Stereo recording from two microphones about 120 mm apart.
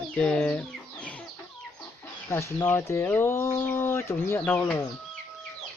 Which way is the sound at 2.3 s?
25° left (ahead or behind).